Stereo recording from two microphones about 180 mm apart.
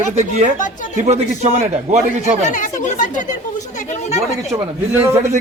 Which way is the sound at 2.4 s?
45° left (ahead or behind).